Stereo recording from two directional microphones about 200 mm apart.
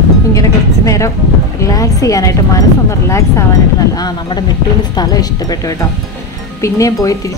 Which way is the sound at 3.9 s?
20° left (ahead or behind).